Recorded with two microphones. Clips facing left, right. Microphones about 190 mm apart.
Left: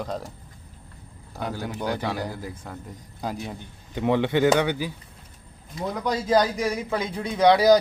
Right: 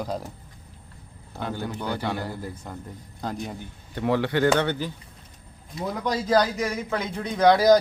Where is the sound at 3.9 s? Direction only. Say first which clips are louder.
Left 2 dB; 20° left (ahead or behind).